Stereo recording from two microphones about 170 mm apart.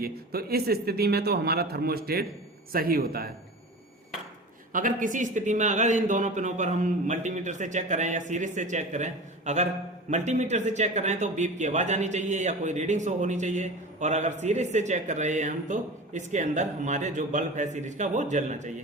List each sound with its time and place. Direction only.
0.0 s a man's voice: 65° right (ahead or behind)
4.7 s speech: 50° right (ahead or behind)